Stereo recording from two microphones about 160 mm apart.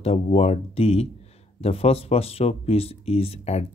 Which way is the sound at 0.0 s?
40° left (ahead or behind).